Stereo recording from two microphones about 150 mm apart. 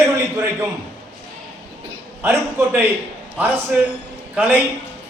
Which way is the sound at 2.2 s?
15° right (ahead or behind).